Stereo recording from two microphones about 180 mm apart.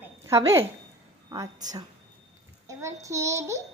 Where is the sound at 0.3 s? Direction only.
15° right (ahead or behind).